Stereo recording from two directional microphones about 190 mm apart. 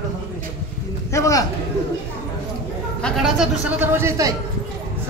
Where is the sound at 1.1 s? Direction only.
15° left (ahead or behind).